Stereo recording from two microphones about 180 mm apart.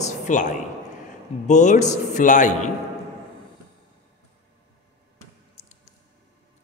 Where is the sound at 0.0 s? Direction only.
45° left (ahead or behind).